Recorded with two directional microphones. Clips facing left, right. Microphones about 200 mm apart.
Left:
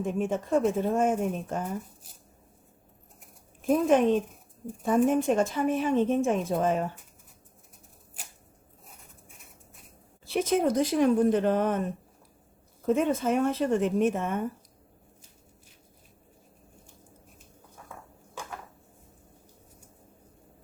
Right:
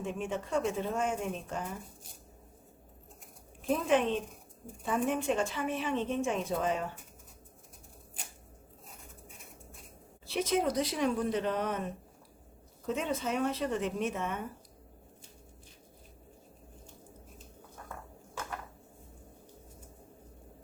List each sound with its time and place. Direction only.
0.0 s a woman's voice: 45° left (ahead or behind)
3.7 s a woman's voice: 45° left (ahead or behind)
10.3 s a woman's voice: 50° left (ahead or behind)
12.8 s a woman's voice: 50° left (ahead or behind)
17.8 s mechanisms: centre (ahead or behind)